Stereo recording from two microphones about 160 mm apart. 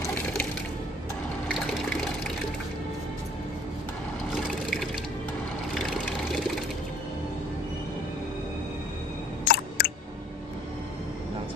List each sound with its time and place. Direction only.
0.1 s music: 10° left (ahead or behind)
1.5 s water: 5° left (ahead or behind)
9.5 s chewing: 80° left